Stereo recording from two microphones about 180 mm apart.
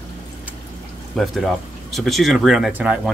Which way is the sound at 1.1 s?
Centre (ahead or behind).